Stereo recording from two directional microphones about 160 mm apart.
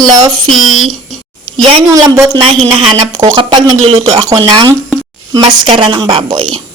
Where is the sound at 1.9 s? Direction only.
20° right (ahead or behind).